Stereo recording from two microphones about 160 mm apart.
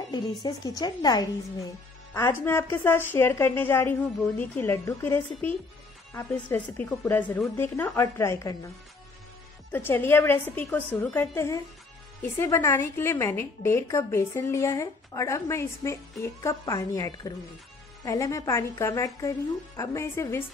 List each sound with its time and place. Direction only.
0.1 s a woman's voice: 25° left (ahead or behind)
2.1 s a woman's voice: 15° left (ahead or behind)
9.7 s a woman's voice: 15° left (ahead or behind)